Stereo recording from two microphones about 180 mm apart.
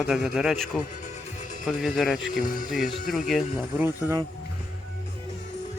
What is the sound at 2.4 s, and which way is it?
Speech, 50° left (ahead or behind).